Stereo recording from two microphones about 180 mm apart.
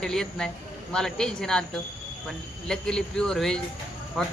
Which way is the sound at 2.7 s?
5° left (ahead or behind).